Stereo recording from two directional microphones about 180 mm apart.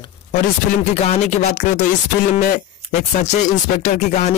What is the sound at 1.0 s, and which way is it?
Speech, 35° left (ahead or behind).